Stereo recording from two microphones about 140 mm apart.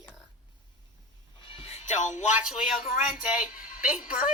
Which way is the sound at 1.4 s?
40° left (ahead or behind).